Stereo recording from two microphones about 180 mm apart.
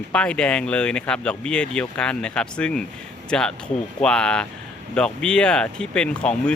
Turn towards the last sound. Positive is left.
turn(degrees=5)  # may be behind; listen again after turning